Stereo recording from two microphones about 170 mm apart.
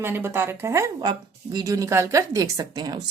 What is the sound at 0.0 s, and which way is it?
A woman's voice, 15° right (ahead or behind).